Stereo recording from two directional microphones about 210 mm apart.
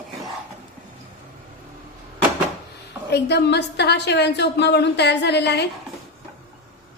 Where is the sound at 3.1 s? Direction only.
55° left (ahead or behind).